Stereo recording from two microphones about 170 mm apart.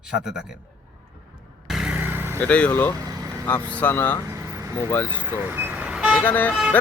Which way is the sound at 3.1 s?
20° right (ahead or behind).